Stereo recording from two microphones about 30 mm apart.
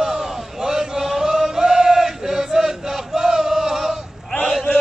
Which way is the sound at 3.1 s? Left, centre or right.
Centre.